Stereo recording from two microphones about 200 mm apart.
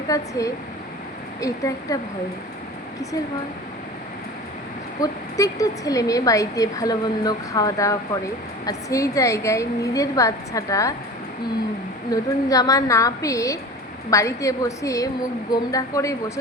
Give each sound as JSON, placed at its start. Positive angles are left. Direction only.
{"t": 0.1, "sound": "a woman's voice", "side_deg": 15}
{"t": 4.9, "sound": "a woman's voice", "side_deg": 15}
{"t": 12.1, "sound": "a woman's voice", "side_deg": 20}